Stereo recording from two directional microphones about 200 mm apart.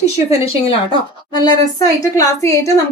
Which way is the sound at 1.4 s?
15° left (ahead or behind).